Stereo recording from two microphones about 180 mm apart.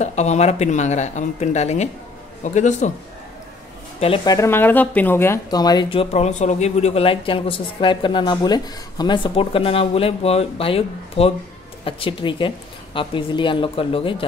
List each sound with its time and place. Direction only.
0.0 s speech: 40° left (ahead or behind)
4.0 s speech: 25° left (ahead or behind)